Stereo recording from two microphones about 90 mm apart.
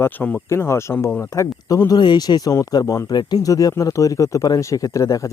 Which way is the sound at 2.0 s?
55° left (ahead or behind).